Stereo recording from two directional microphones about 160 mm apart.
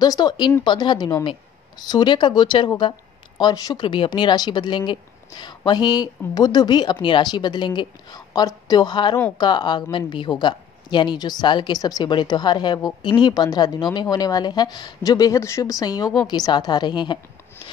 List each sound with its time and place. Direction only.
0.0 s speech: 25° left (ahead or behind)